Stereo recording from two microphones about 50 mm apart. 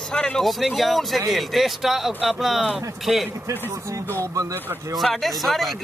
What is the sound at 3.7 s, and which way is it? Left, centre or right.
Speech, right.